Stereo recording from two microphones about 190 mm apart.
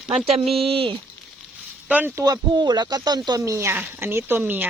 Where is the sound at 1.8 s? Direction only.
10° right (ahead or behind).